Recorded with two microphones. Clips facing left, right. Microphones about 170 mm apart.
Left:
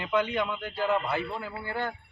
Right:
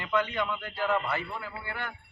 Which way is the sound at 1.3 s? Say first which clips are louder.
Left 4 dB; 30° left (ahead or behind).